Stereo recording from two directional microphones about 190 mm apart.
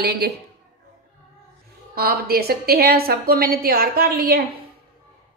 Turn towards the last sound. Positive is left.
turn(degrees=-50)  # may be behind; listen again after turning